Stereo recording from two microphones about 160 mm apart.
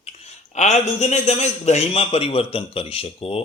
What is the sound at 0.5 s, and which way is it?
A man's voice, 45° left (ahead or behind).